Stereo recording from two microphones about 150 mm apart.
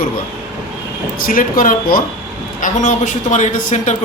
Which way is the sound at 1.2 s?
65° left (ahead or behind).